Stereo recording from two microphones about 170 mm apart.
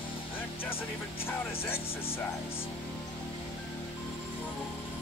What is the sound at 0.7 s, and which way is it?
Speech, 15° left (ahead or behind).